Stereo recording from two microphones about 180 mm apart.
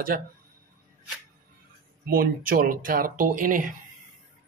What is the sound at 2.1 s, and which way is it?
Speech, 50° right (ahead or behind).